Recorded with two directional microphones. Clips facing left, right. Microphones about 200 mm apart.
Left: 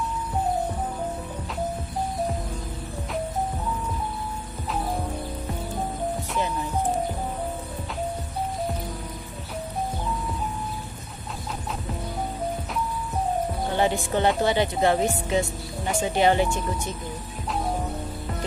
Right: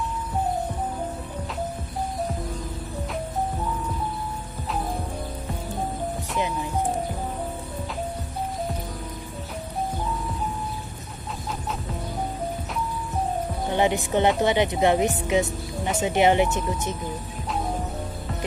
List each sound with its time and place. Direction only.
13.7 s speech: 20° right (ahead or behind)